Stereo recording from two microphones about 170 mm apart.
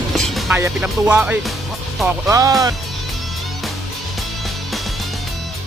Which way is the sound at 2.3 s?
20° right (ahead or behind).